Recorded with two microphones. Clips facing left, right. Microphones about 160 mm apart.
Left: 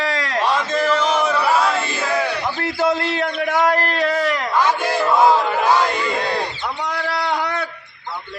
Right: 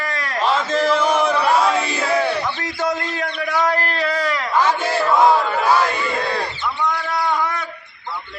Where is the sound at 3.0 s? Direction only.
70° left (ahead or behind).